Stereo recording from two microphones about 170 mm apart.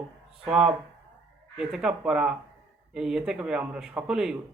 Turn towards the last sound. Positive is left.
turn(degrees=-5)  # may be behind; listen again after turning